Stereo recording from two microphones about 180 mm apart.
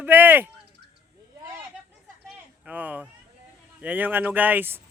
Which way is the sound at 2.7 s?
10° right (ahead or behind).